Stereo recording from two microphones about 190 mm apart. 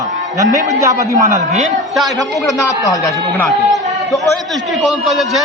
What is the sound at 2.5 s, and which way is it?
A man's voice, 15° left (ahead or behind).